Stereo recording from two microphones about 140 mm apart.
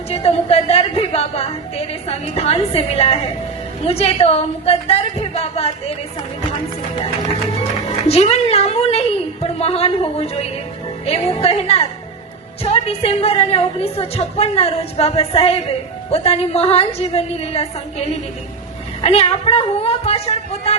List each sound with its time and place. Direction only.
0.1 s a woman's voice: 45° left (ahead or behind)
7.9 s a woman's voice: 50° left (ahead or behind)